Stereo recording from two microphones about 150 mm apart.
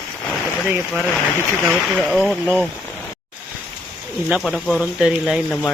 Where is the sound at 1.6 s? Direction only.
Centre (ahead or behind).